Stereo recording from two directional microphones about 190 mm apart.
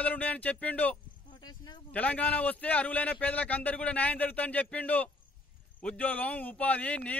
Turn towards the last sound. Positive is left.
turn(degrees=5)  # may be behind; listen again after turning